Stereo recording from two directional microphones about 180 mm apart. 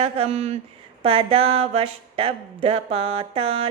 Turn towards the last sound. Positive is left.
turn(degrees=-30)  # may be behind; listen again after turning